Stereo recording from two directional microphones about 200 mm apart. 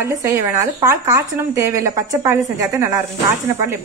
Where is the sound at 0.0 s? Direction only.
15° right (ahead or behind).